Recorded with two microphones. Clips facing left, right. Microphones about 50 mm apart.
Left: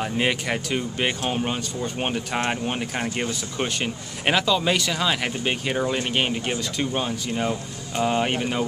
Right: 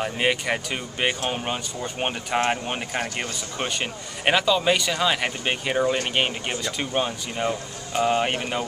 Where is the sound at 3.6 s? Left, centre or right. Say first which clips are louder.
Left 1 dB; centre.